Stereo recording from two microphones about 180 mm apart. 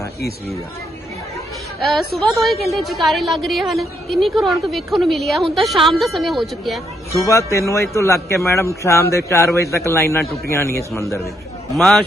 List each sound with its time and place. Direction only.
0.2 s speech: 60° left (ahead or behind)
1.8 s a woman's voice: centre (ahead or behind)
7.3 s speech: 15° left (ahead or behind)
11.8 s a woman's voice: centre (ahead or behind)